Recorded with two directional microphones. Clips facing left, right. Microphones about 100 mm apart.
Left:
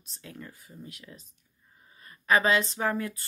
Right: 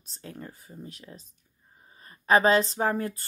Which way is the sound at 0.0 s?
35° right (ahead or behind).